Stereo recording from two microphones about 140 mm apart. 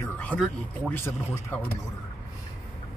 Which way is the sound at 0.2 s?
10° left (ahead or behind).